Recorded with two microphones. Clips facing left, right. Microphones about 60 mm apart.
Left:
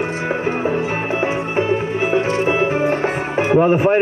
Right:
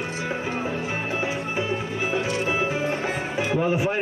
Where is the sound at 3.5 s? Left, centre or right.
Left.